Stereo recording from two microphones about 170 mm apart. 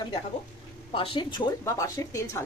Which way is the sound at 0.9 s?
30° left (ahead or behind).